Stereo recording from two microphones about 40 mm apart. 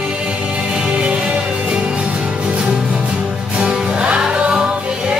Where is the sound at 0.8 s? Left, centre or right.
Right.